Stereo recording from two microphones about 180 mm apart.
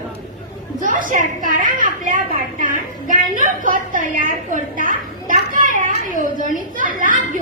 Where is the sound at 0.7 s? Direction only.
50° right (ahead or behind).